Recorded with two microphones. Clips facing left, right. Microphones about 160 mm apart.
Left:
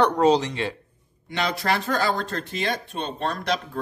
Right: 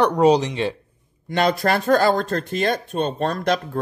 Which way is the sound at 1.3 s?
50° right (ahead or behind).